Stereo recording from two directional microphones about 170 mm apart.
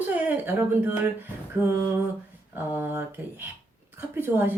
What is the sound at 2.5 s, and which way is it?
A woman's voice, 10° right (ahead or behind).